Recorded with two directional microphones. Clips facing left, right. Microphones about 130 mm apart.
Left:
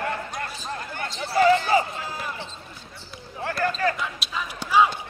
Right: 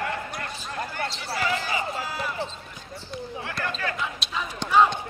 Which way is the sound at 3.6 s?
40° left (ahead or behind).